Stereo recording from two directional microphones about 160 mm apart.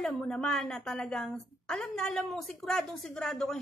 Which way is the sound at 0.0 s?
5° left (ahead or behind).